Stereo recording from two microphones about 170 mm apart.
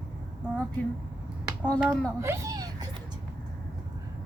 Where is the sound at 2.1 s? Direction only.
15° right (ahead or behind).